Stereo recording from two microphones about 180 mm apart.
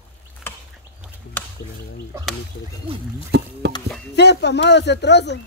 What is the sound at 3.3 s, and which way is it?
Speech, 70° right (ahead or behind).